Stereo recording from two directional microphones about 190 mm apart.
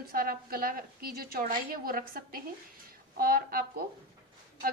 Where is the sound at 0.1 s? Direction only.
50° right (ahead or behind).